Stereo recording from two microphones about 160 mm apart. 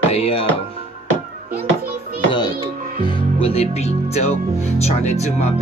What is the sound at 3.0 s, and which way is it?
Speech, 35° left (ahead or behind).